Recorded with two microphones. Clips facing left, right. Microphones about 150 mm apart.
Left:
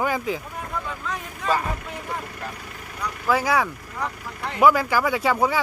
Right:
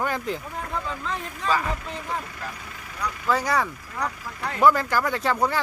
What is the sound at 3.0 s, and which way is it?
Speech, 5° left (ahead or behind).